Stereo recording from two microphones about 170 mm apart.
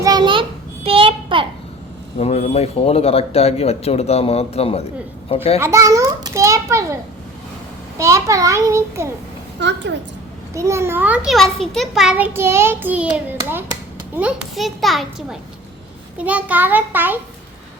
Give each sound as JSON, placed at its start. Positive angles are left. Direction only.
{"t": 0.0, "sound": "a sound", "side_deg": -25}
{"t": 2.1, "sound": "a man's voice", "side_deg": 40}
{"t": 5.5, "sound": "a child's voice", "side_deg": -15}
{"t": 9.6, "sound": "a woman's voice", "side_deg": -90}
{"t": 10.5, "sound": "a child's voice", "side_deg": -15}